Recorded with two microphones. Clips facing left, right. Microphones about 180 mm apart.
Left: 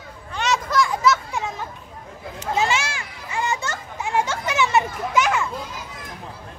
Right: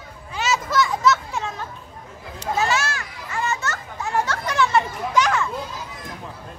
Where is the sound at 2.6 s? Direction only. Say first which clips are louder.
Even; 10° left (ahead or behind).